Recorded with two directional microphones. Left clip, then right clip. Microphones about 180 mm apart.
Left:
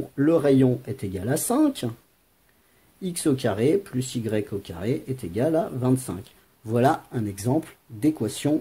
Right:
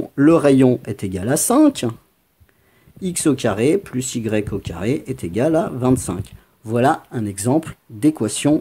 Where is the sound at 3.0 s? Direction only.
20° right (ahead or behind).